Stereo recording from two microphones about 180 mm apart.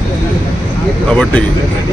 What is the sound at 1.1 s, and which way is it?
Speech, 5° left (ahead or behind).